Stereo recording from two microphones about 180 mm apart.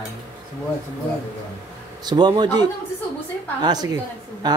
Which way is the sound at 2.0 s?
25° right (ahead or behind).